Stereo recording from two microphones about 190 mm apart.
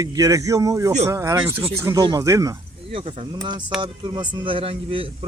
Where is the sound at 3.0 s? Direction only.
30° right (ahead or behind).